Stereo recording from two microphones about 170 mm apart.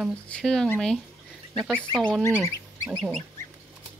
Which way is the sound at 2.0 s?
5° left (ahead or behind).